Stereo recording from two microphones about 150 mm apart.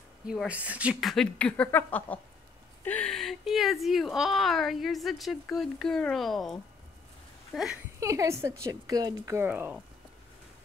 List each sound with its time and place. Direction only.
0.3 s speech: 5° right (ahead or behind)
1.1 s speech: 5° left (ahead or behind)
8.0 s speech: 20° right (ahead or behind)